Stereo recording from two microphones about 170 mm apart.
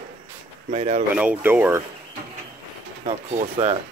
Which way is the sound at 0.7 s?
40° right (ahead or behind).